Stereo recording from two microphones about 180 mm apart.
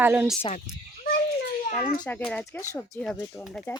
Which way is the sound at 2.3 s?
10° left (ahead or behind).